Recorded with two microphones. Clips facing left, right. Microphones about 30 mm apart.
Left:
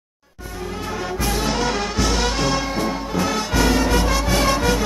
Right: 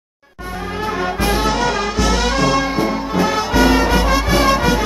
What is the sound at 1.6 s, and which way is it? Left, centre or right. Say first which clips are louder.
Music: right 4 dB; centre.